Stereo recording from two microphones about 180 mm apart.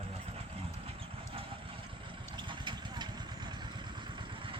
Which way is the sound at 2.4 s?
25° right (ahead or behind).